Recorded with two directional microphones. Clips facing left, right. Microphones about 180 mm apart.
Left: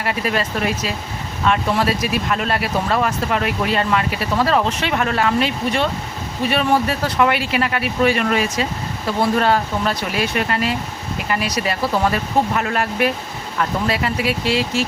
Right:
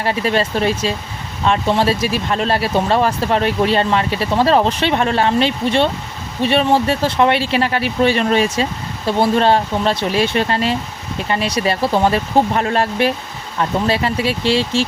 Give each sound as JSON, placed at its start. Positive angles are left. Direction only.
{"t": 0.0, "sound": "speech", "side_deg": -30}